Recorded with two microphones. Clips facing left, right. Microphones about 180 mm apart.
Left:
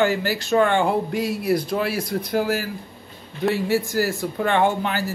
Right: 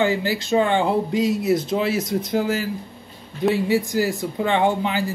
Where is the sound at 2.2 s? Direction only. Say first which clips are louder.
Even; 60° left (ahead or behind).